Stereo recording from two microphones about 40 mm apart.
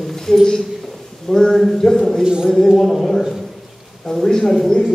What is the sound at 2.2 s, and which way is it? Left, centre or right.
Speech, centre.